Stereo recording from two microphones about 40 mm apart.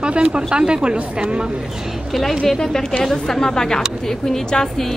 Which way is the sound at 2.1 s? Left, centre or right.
Centre.